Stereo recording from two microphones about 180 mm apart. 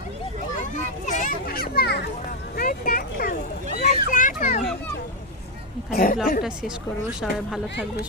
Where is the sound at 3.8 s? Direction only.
40° left (ahead or behind).